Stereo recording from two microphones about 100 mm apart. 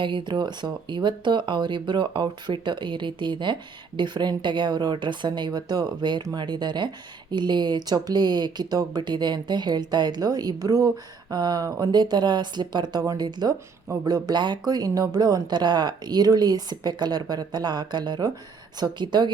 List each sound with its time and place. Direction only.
0.0 s speech: 50° right (ahead or behind)